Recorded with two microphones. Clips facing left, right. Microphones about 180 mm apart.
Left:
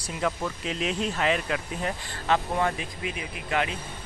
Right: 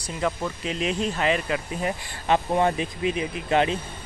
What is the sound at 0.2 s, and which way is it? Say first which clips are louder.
Speech: right 2 dB; centre (ahead or behind).